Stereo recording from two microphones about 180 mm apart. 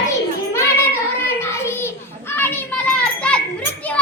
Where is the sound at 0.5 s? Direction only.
15° left (ahead or behind).